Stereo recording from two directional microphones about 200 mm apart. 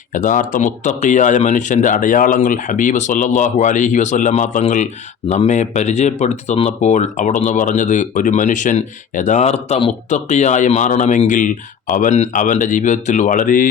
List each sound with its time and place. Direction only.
0.1 s speech: 40° left (ahead or behind)